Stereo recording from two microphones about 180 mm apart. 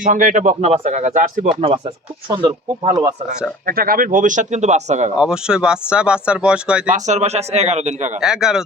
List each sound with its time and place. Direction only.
0.0 s speech: 45° right (ahead or behind)
2.3 s speech: 25° right (ahead or behind)
3.7 s speech: 55° right (ahead or behind)
5.1 s speech: 5° right (ahead or behind)
6.9 s speech: 40° right (ahead or behind)
8.2 s speech: 5° right (ahead or behind)